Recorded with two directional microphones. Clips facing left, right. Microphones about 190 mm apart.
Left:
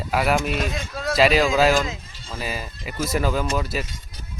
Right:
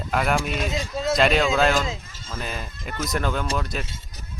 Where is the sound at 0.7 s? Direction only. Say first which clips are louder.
Right 2 dB; 20° right (ahead or behind).